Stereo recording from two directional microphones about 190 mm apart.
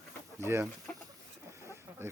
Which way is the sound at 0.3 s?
15° right (ahead or behind).